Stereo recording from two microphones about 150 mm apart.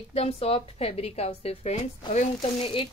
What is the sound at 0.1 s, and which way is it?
A woman's voice, 40° left (ahead or behind).